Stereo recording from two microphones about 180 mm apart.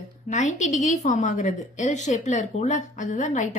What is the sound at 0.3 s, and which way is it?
A woman's voice, 40° left (ahead or behind).